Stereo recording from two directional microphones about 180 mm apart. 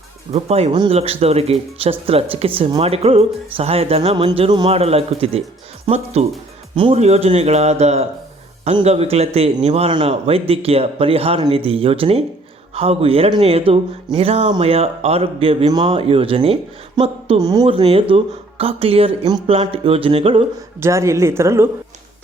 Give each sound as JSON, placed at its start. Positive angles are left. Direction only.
{"t": 0.3, "sound": "speech", "side_deg": -35}
{"t": 20.8, "sound": "a woman's voice", "side_deg": -15}